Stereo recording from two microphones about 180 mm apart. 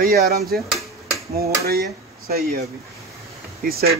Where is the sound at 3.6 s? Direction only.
60° right (ahead or behind).